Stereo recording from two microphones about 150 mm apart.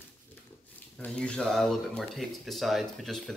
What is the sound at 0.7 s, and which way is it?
Speech, 10° left (ahead or behind).